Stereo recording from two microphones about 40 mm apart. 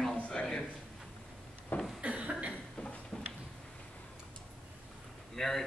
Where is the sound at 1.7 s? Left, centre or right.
Left.